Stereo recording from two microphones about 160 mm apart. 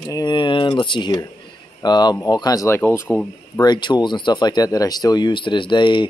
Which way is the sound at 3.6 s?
25° left (ahead or behind).